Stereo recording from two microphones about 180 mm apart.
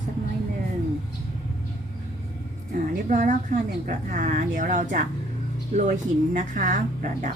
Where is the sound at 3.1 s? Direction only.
45° right (ahead or behind).